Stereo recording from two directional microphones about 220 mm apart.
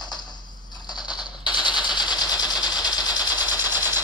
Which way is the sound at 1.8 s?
Centre (ahead or behind).